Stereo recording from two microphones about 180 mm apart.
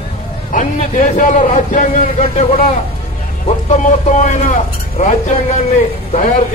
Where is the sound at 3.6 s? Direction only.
40° left (ahead or behind).